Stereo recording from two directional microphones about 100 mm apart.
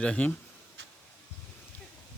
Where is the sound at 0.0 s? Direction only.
10° left (ahead or behind).